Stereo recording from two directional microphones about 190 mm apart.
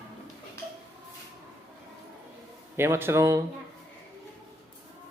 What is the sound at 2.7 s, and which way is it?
Speech, 15° right (ahead or behind).